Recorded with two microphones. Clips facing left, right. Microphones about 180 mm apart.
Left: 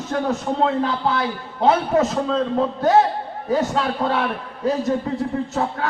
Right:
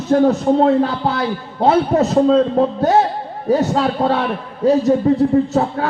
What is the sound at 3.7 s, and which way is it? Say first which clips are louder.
Speech: right 5 dB; 40° right (ahead or behind).